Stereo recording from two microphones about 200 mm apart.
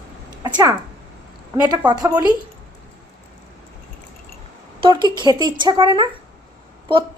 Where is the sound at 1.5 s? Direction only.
20° right (ahead or behind).